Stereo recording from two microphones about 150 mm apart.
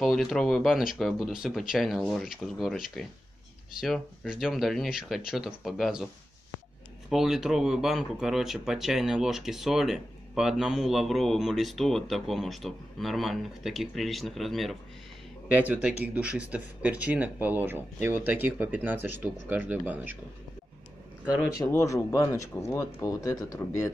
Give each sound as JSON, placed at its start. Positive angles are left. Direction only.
{"t": 0.0, "sound": "speech", "side_deg": 0}
{"t": 7.1, "sound": "speech", "side_deg": 0}
{"t": 21.5, "sound": "speech", "side_deg": 20}